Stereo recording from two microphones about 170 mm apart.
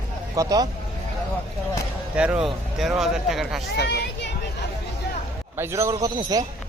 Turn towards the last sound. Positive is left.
turn(degrees=-20)  # may be behind; listen again after turning